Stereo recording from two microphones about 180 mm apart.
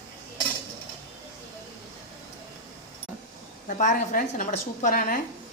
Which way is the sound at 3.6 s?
45° left (ahead or behind).